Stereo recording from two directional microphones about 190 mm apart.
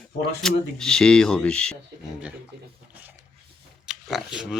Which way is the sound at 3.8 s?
Centre (ahead or behind).